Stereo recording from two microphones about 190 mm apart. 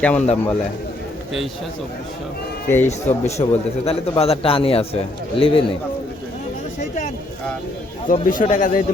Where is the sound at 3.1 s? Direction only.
35° left (ahead or behind).